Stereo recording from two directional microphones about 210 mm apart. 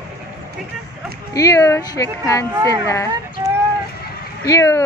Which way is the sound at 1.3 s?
15° left (ahead or behind).